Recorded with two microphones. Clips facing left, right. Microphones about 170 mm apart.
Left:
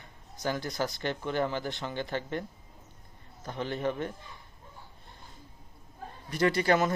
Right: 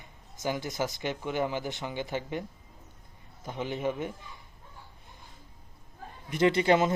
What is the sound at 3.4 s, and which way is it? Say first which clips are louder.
Speech: even; 15° right (ahead or behind).